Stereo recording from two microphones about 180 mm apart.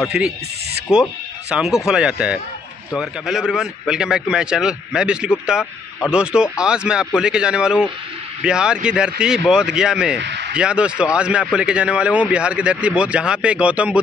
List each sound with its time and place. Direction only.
0.9 s speech: 5° right (ahead or behind)
10.2 s a sound: 75° right (ahead or behind)
10.5 s speech: 5° right (ahead or behind)